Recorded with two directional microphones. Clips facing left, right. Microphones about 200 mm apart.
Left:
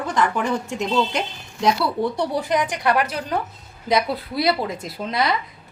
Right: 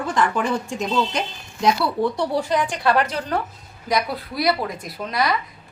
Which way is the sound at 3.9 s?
25° left (ahead or behind).